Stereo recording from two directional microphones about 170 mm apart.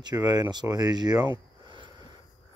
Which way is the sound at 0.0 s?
20° right (ahead or behind).